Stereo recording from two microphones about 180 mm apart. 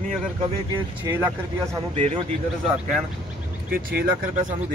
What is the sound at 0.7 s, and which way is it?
Speech, 15° right (ahead or behind).